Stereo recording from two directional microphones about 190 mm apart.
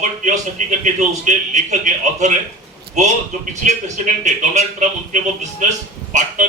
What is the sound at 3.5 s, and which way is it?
A man's voice, 40° right (ahead or behind).